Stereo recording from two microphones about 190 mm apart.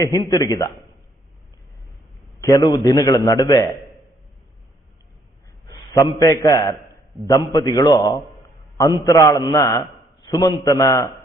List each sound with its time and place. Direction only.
0.0 s a man's voice: 20° left (ahead or behind)
2.4 s a man's voice: 15° left (ahead or behind)
5.6 s a sound: 15° left (ahead or behind)
6.1 s a man's voice: 20° left (ahead or behind)